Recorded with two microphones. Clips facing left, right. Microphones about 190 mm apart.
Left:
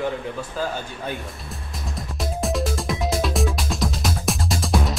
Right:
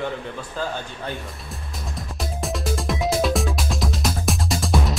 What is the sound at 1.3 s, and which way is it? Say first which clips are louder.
Music: even; centre (ahead or behind).